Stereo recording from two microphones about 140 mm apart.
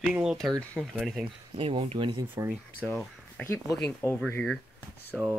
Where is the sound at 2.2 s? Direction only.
20° right (ahead or behind).